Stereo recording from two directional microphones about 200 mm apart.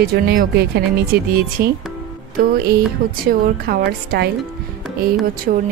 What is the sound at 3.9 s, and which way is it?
Speech, 50° right (ahead or behind).